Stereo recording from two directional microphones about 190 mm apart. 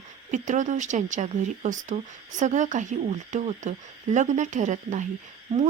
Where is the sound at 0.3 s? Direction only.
40° right (ahead or behind).